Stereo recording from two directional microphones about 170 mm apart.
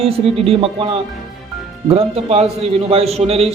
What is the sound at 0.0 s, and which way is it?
A man's voice, 35° right (ahead or behind).